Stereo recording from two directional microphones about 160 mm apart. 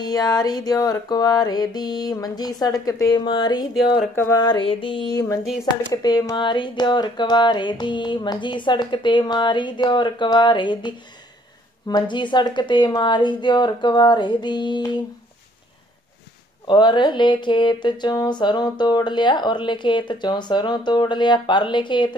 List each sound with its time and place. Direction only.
0.0 s speech: 25° left (ahead or behind)
4.1 s a sound: 15° left (ahead or behind)
4.4 s speech: 30° left (ahead or behind)
11.9 s speech: 30° left (ahead or behind)
16.6 s speech: 30° left (ahead or behind)